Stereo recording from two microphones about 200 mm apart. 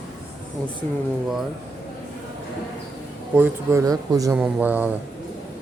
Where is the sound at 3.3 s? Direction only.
10° right (ahead or behind).